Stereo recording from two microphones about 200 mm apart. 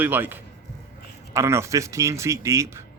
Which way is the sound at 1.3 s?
15° right (ahead or behind).